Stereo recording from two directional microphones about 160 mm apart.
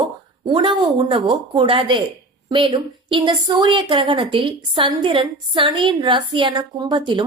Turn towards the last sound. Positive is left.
turn(degrees=-30)  # may be behind; listen again after turning